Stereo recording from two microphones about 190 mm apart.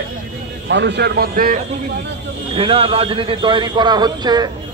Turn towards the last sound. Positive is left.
turn(degrees=-20)  # may be behind; listen again after turning